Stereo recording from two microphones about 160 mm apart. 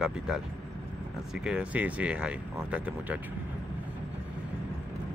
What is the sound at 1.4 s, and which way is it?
Speech, 5° right (ahead or behind).